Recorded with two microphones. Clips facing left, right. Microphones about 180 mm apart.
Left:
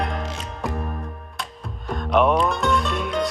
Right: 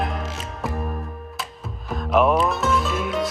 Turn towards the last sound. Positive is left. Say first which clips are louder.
# even
turn(degrees=0)  # may be behind; listen again after turning